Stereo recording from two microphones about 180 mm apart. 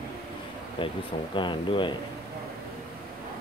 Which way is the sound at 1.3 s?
25° left (ahead or behind).